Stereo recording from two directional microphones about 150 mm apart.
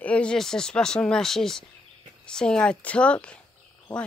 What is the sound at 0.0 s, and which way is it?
A woman's voice, 5° left (ahead or behind).